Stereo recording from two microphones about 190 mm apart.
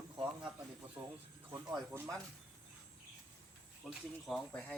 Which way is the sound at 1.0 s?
15° right (ahead or behind).